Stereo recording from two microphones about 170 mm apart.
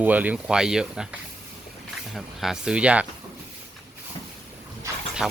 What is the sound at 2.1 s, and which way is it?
Speech, centre (ahead or behind).